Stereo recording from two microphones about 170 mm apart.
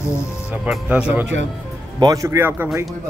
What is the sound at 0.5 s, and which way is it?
Speech, 5° right (ahead or behind).